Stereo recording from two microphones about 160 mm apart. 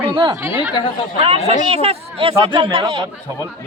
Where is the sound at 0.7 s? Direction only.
30° left (ahead or behind).